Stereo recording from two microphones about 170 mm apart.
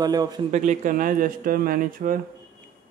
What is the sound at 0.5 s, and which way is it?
Speech, 45° right (ahead or behind).